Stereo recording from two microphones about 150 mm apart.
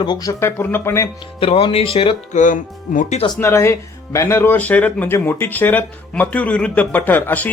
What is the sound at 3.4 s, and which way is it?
Speech, 15° left (ahead or behind).